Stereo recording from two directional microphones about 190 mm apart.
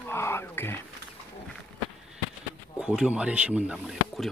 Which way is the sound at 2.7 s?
5° right (ahead or behind).